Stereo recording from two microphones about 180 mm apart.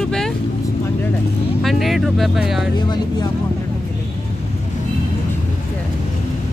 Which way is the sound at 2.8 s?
25° left (ahead or behind).